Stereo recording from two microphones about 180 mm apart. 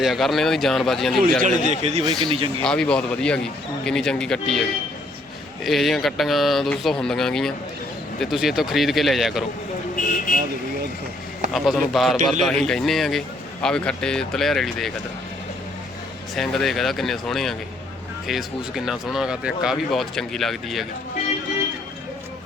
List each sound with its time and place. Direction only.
0.0 s a man's voice: centre (ahead or behind)
1.8 s speech: 35° right (ahead or behind)
2.6 s a man's voice: 5° left (ahead or behind)
5.6 s a man's voice: centre (ahead or behind)
9.9 s vehicle: 50° left (ahead or behind)
11.5 s a man's voice: centre (ahead or behind)
16.3 s a man's voice: centre (ahead or behind)